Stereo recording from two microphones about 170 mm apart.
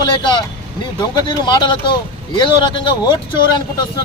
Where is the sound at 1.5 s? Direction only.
25° left (ahead or behind).